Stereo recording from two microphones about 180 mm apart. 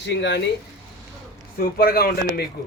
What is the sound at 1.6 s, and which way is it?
Speech, 55° left (ahead or behind).